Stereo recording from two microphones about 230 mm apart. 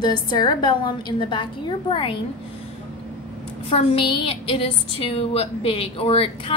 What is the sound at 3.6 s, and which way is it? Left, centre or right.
A woman's voice, left.